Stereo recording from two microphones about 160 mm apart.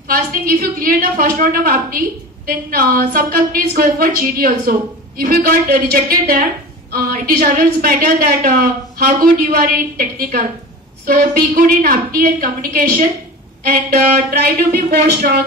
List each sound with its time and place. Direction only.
0.1 s a woman's voice: 65° right (ahead or behind)
7.4 s a woman's voice: 55° right (ahead or behind)